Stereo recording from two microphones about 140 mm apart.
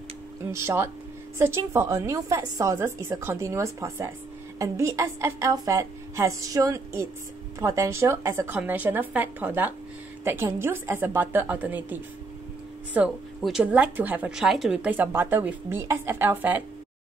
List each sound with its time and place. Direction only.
0.5 s a woman's voice: 20° right (ahead or behind)
13.4 s speech: 5° right (ahead or behind)